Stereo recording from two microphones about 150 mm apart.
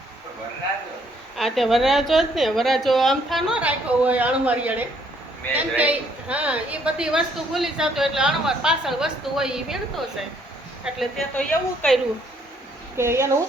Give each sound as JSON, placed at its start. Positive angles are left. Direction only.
{"t": 1.4, "sound": "a woman's voice", "side_deg": 0}
{"t": 10.8, "sound": "a woman's voice", "side_deg": 5}
{"t": 13.0, "sound": "speech", "side_deg": -20}